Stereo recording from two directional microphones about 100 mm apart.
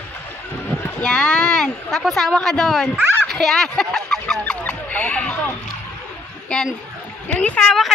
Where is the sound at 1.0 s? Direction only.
10° left (ahead or behind).